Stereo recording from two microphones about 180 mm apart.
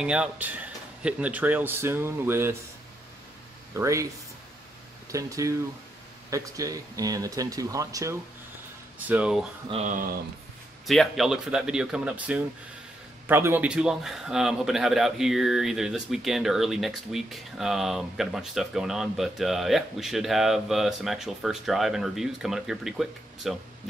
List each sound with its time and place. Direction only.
0.0 s a man's voice: 5° right (ahead or behind)
3.7 s a man's voice: 15° right (ahead or behind)
5.1 s a man's voice: 20° right (ahead or behind)
9.7 s speech: 35° right (ahead or behind)
10.9 s a man's voice: centre (ahead or behind)